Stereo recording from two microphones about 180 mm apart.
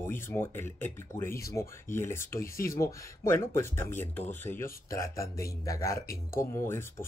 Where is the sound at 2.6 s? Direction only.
15° left (ahead or behind).